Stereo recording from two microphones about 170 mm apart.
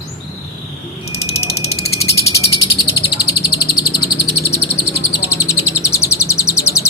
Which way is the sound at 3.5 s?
25° left (ahead or behind).